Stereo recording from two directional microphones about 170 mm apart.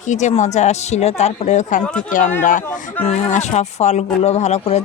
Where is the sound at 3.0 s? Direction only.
40° left (ahead or behind).